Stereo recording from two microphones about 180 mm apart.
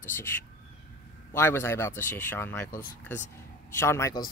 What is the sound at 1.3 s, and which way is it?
Speech, 15° left (ahead or behind).